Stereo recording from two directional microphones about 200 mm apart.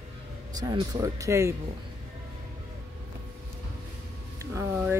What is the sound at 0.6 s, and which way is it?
Speech, 20° right (ahead or behind).